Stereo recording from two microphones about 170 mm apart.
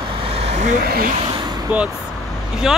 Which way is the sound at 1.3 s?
25° right (ahead or behind).